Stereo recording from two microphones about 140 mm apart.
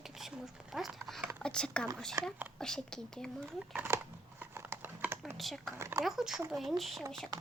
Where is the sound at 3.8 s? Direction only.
15° right (ahead or behind).